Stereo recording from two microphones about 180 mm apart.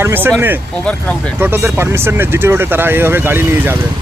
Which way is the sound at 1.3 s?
10° right (ahead or behind).